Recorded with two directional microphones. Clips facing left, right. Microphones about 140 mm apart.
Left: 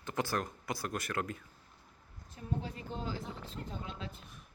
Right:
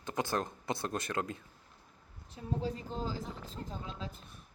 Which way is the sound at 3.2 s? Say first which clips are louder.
Right 1 dB; centre (ahead or behind).